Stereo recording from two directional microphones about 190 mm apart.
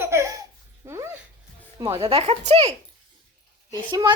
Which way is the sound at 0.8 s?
15° right (ahead or behind).